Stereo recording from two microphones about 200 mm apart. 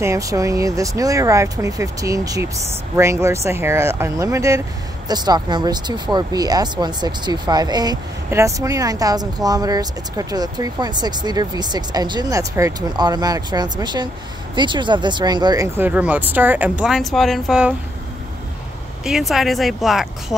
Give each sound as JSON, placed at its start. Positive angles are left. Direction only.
{"t": 0.0, "sound": "speech", "side_deg": -15}
{"t": 19.0, "sound": "speech", "side_deg": 0}